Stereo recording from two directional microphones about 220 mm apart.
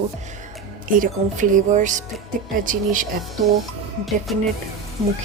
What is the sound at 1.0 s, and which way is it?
Speech, 35° right (ahead or behind).